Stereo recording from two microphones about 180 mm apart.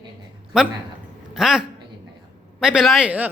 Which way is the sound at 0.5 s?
5° right (ahead or behind).